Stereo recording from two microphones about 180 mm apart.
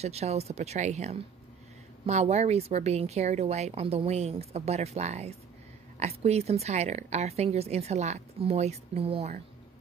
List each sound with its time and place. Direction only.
0.0 s a woman's voice: 35° right (ahead or behind)